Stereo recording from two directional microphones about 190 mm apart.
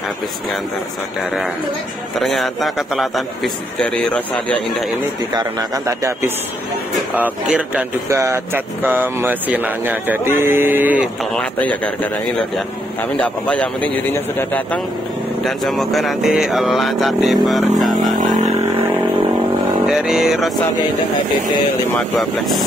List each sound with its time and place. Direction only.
2.1 s speech: centre (ahead or behind)
5.3 s speech: 20° right (ahead or behind)
11.3 s speech: 5° left (ahead or behind)
13.2 s speech: 5° left (ahead or behind)
19.9 s speech: centre (ahead or behind)